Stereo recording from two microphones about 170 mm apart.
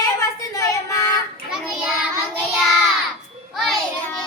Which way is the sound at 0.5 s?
20° left (ahead or behind).